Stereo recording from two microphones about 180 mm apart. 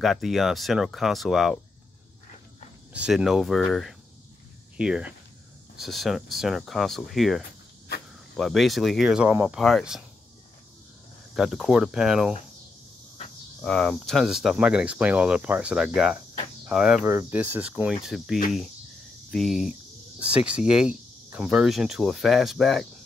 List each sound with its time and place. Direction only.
0.0 s speech: centre (ahead or behind)
2.9 s speech: 5° right (ahead or behind)
11.3 s speech: centre (ahead or behind)
13.6 s speech: 5° left (ahead or behind)